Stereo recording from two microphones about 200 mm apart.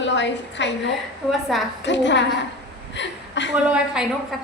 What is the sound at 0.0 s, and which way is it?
Speech, 65° left (ahead or behind).